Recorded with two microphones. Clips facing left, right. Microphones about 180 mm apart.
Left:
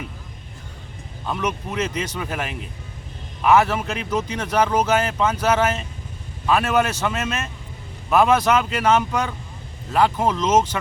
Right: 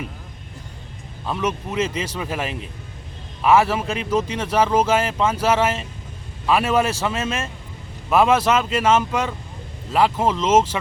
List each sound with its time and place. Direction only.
1.3 s speech: 5° right (ahead or behind)
1.8 s speech: 30° right (ahead or behind)
2.0 s speech: 5° right (ahead or behind)
3.9 s speech: 30° right (ahead or behind)
4.4 s speech: 5° right (ahead or behind)